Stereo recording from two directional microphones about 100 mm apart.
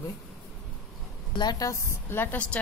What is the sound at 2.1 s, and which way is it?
Speech, 20° left (ahead or behind).